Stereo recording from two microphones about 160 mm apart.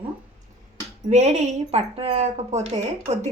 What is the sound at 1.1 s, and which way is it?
Speech, 45° right (ahead or behind).